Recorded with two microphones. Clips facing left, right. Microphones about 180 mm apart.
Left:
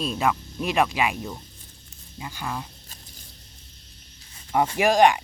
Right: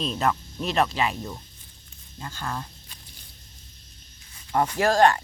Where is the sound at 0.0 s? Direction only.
10° left (ahead or behind).